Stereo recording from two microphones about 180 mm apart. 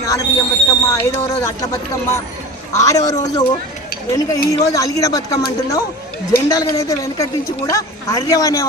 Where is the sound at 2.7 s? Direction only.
15° left (ahead or behind).